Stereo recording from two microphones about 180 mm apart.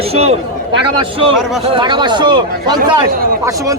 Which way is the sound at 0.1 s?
35° right (ahead or behind).